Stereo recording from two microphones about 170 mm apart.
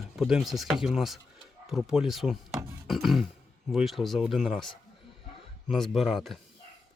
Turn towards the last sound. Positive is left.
turn(degrees=0)  # may be behind; listen again after turning